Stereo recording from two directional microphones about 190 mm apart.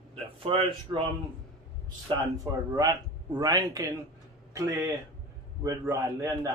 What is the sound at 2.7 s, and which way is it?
A man's voice, 20° right (ahead or behind).